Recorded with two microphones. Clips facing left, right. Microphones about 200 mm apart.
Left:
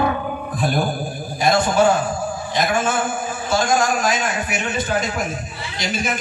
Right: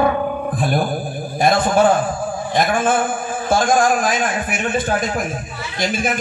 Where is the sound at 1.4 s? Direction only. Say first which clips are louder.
Right 1 dB; 50° right (ahead or behind).